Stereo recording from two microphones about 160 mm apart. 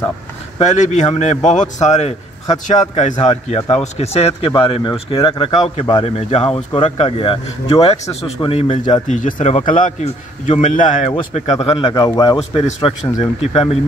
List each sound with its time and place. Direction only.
0.6 s speech: 45° left (ahead or behind)
9.1 s a man's voice: 45° left (ahead or behind)
10.0 s speech: 45° left (ahead or behind)
11.9 s speech: 20° left (ahead or behind)
12.4 s speech: 40° left (ahead or behind)